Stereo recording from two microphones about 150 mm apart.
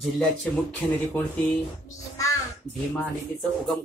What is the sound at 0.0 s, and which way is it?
Speech, centre (ahead or behind).